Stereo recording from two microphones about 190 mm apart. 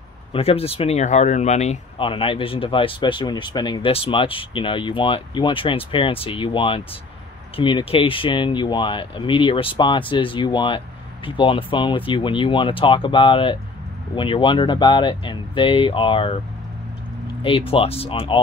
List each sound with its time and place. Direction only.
0.3 s speech: 30° left (ahead or behind)
17.4 s speech: 30° left (ahead or behind)